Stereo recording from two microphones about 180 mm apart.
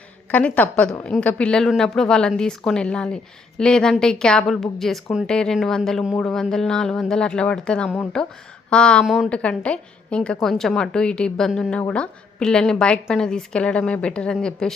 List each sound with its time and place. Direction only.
0.3 s a woman's voice: 5° left (ahead or behind)